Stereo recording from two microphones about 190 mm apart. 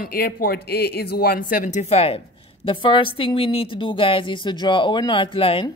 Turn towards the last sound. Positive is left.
turn(degrees=30)  # may be behind; listen again after turning